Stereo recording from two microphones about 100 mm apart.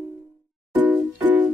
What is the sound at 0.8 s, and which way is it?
Music, 15° right (ahead or behind).